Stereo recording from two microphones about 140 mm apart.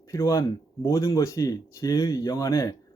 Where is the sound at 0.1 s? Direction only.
20° left (ahead or behind).